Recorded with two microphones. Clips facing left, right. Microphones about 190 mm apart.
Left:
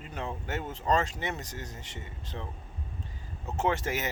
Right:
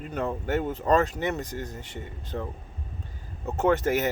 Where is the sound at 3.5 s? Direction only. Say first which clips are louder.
Right 7 dB; 55° right (ahead or behind).